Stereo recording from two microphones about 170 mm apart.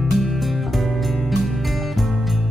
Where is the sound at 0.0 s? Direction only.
Centre (ahead or behind).